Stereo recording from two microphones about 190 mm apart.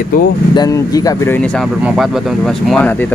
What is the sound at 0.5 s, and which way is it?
Speech, 20° left (ahead or behind).